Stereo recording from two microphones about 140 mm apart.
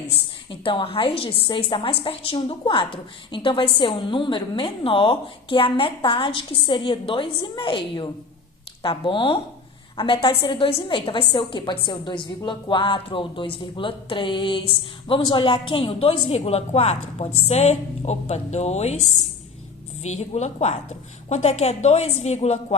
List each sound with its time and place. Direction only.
0.6 s a woman's voice: 40° left (ahead or behind)
20.0 s a woman's voice: 50° left (ahead or behind)